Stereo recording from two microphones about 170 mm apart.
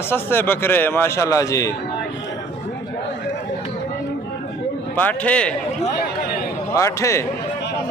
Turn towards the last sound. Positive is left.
turn(degrees=15)  # may be behind; listen again after turning